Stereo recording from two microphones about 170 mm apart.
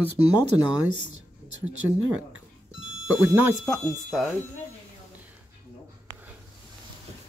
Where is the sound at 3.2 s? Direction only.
10° right (ahead or behind).